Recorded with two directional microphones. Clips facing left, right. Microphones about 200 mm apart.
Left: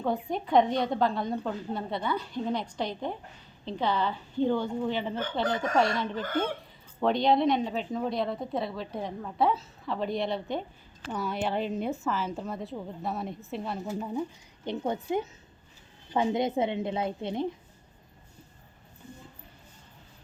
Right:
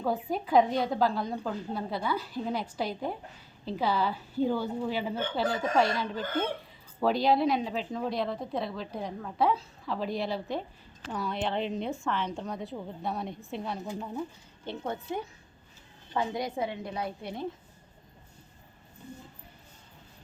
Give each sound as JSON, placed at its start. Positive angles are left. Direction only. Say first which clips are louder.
{"t": 0.0, "sound": "a woman's voice", "louder": "even", "side_deg": -5}
{"t": 14.0, "sound": "a woman's voice", "louder": "left 3 dB", "side_deg": 10}